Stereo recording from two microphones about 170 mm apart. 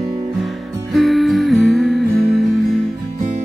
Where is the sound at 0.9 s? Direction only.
Centre (ahead or behind).